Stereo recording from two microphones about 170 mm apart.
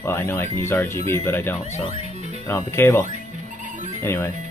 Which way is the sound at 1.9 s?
40° right (ahead or behind).